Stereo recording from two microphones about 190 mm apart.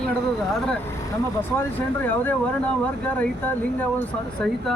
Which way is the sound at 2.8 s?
5° left (ahead or behind).